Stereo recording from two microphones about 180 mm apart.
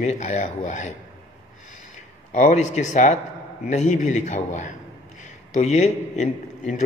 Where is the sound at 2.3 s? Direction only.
45° left (ahead or behind).